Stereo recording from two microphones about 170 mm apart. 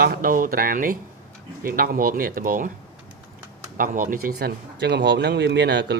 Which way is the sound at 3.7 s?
55° right (ahead or behind).